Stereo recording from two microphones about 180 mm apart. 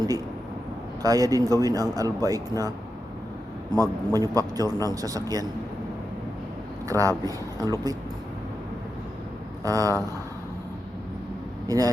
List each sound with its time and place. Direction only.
1.0 s speech: 20° right (ahead or behind)
6.8 s speech: 20° right (ahead or behind)
9.6 s speech: 20° right (ahead or behind)
11.7 s speech: 20° right (ahead or behind)